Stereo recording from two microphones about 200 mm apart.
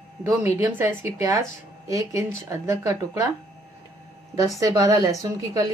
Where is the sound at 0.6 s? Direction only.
10° right (ahead or behind).